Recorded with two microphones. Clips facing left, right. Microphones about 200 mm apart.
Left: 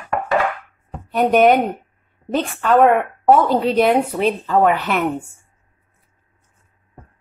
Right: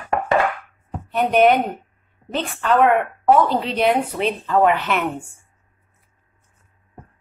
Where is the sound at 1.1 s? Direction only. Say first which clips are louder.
Left 2 dB; 45° left (ahead or behind).